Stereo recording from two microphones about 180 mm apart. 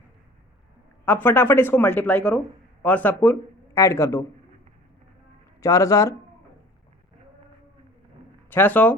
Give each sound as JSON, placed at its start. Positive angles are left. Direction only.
{"t": 1.0, "sound": "speech", "side_deg": 10}
{"t": 5.6, "sound": "speech", "side_deg": 15}
{"t": 8.4, "sound": "speech", "side_deg": 10}